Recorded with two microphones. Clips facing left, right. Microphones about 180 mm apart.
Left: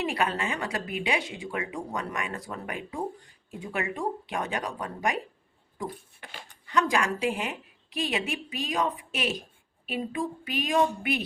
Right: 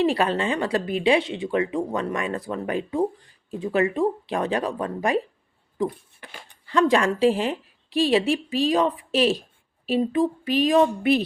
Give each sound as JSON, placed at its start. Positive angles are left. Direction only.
{"t": 0.0, "sound": "speech", "side_deg": -30}
{"t": 6.7, "sound": "speech", "side_deg": -30}